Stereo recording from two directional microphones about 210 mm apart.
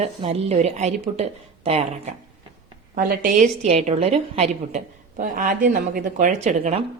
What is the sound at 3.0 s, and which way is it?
Speech, 45° right (ahead or behind).